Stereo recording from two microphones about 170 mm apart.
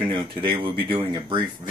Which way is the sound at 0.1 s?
30° right (ahead or behind).